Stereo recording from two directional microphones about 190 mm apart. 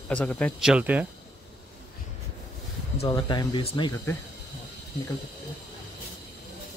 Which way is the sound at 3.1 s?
20° left (ahead or behind).